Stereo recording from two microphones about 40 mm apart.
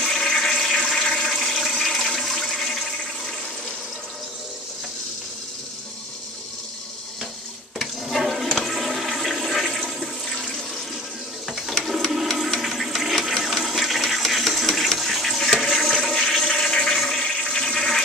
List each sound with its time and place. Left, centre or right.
0.0 s toilet flush: centre
0.9 s toilet flush: centre
1.2 s toilet flush: centre
7.8 s toilet flush: centre
11.4 s water: centre
12.1 s a sound: centre
12.5 s toilet flush: centre
16.4 s toilet flush: centre